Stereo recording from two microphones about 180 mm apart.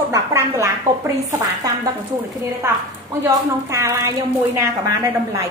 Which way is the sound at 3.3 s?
15° right (ahead or behind).